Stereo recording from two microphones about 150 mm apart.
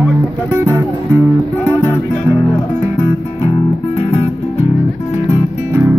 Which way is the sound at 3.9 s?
40° left (ahead or behind).